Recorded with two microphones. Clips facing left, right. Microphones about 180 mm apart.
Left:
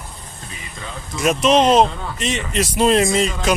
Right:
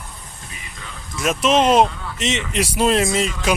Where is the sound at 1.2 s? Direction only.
Centre (ahead or behind).